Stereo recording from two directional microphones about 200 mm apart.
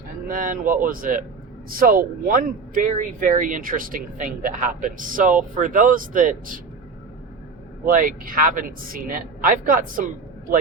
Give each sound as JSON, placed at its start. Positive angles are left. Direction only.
{"t": 0.3, "sound": "speech", "side_deg": -40}
{"t": 7.9, "sound": "speech", "side_deg": -45}